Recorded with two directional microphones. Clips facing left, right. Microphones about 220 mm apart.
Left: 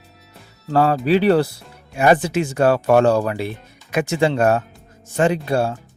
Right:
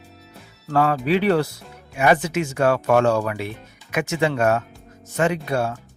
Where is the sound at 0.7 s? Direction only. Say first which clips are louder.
Left 3 dB; 35° left (ahead or behind).